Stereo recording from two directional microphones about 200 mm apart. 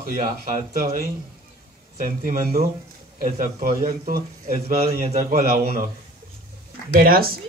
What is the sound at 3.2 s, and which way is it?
A man's voice, 45° right (ahead or behind).